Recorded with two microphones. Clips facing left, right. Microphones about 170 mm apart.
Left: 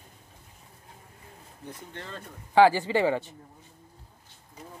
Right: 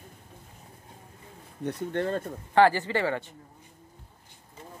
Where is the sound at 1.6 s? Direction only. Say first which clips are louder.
Right 13 dB; 65° right (ahead or behind).